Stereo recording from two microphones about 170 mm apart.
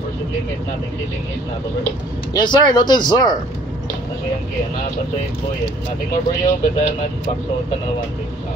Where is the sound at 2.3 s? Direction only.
25° left (ahead or behind).